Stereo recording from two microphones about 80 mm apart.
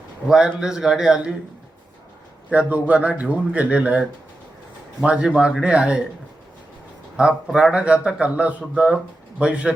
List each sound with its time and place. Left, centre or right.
0.3 s speech: centre
2.5 s speech: centre
7.2 s speech: centre